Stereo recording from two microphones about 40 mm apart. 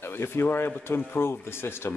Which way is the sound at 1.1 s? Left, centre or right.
Left.